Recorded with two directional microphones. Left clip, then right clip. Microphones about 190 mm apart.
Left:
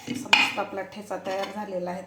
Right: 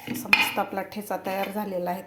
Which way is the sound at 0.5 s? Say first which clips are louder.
Right 2 dB; 60° right (ahead or behind).